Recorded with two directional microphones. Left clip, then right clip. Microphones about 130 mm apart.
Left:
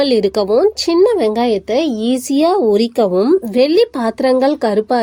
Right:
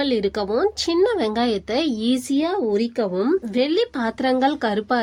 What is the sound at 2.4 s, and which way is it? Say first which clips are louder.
Speech: left 12 dB; 45° left (ahead or behind).